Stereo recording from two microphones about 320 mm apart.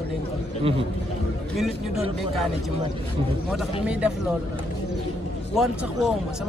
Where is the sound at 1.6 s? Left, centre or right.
Centre.